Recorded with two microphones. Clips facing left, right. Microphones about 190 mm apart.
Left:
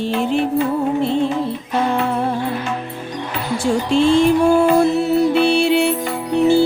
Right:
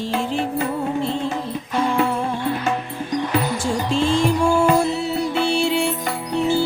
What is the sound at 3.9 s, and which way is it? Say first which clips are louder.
Music: left 6 dB; 65° left (ahead or behind).